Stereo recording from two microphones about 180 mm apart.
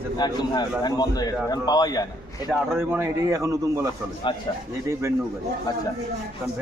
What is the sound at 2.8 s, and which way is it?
A man's voice, 15° right (ahead or behind).